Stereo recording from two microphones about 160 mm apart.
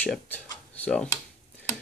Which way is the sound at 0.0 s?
10° left (ahead or behind).